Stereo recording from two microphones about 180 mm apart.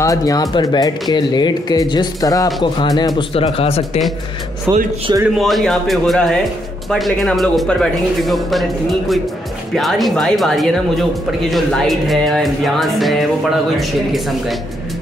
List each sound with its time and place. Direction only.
0.0 s speech: 20° left (ahead or behind)
4.7 s speech: 15° right (ahead or behind)
5.1 s a man's voice: 25° right (ahead or behind)
5.4 s speech: centre (ahead or behind)
9.8 s speech: centre (ahead or behind)